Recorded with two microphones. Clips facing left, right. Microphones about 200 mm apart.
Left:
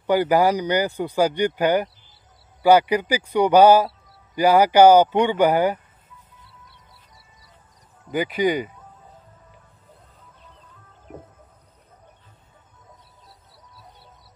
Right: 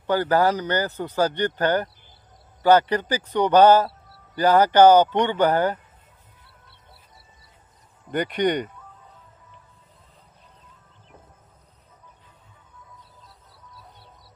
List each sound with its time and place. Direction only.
0.0 s speech: 10° left (ahead or behind)
6.4 s music: 60° right (ahead or behind)
8.1 s speech: 5° left (ahead or behind)